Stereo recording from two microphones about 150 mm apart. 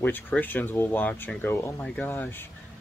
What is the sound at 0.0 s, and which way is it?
Speech, 10° left (ahead or behind).